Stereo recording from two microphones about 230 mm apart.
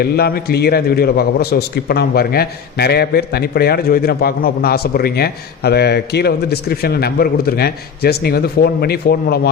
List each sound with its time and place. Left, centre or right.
0.0 s a man's voice: left